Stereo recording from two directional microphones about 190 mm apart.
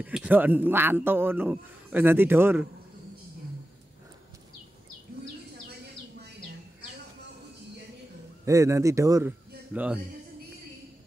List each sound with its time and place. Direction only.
0.0 s a man's voice: 5° right (ahead or behind)
8.5 s a man's voice: 15° right (ahead or behind)